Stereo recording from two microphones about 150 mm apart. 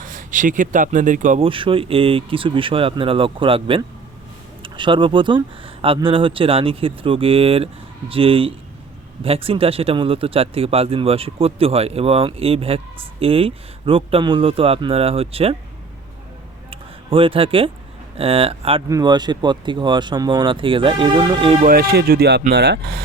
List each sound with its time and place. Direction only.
0.0 s speech: 65° right (ahead or behind)
1.4 s speech: 35° right (ahead or behind)
16.6 s a sound: 35° right (ahead or behind)
18.2 s speech: 40° right (ahead or behind)
18.9 s speech: 25° right (ahead or behind)
21.6 s speech: 80° right